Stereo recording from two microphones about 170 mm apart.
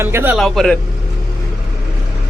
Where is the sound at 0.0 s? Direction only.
15° right (ahead or behind).